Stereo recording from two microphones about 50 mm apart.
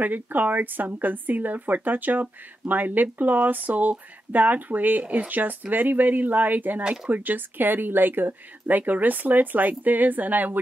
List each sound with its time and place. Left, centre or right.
0.0 s speech: right